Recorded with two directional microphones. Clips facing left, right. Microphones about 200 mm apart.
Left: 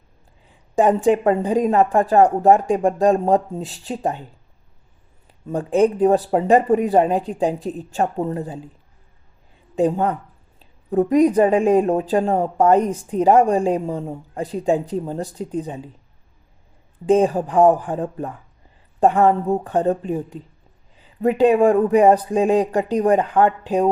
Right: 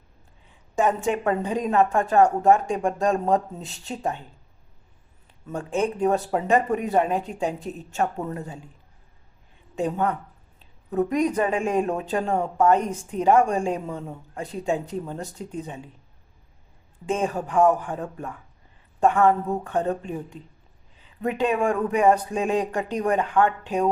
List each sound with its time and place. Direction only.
0.8 s speech: 35° left (ahead or behind)
5.5 s speech: 35° left (ahead or behind)
9.7 s speech: 35° left (ahead or behind)
17.1 s speech: 35° left (ahead or behind)